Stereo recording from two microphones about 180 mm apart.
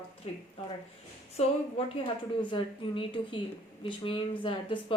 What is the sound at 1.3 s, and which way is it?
A woman's voice, 30° left (ahead or behind).